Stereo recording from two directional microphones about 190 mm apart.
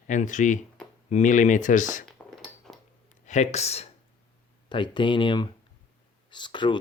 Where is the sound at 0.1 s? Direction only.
40° left (ahead or behind).